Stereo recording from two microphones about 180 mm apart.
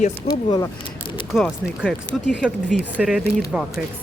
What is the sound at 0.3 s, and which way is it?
Speech, 20° left (ahead or behind).